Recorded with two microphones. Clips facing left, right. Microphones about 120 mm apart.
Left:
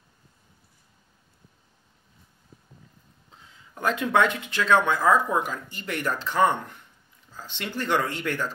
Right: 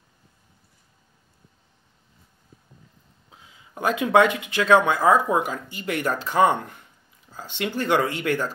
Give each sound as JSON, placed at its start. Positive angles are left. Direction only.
{"t": 3.3, "sound": "speech", "side_deg": -10}